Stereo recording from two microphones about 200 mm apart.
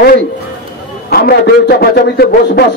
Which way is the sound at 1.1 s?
50° left (ahead or behind).